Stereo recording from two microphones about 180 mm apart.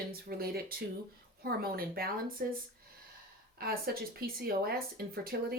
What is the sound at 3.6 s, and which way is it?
Speech, 60° right (ahead or behind).